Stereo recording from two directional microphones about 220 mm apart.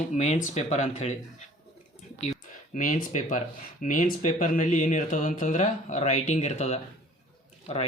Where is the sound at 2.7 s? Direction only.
35° left (ahead or behind).